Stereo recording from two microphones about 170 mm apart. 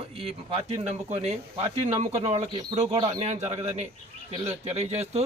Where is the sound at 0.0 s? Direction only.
35° right (ahead or behind).